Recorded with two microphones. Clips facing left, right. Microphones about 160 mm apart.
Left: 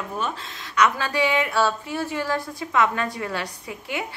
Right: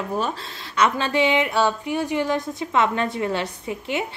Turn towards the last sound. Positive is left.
turn(degrees=-25)  # may be behind; listen again after turning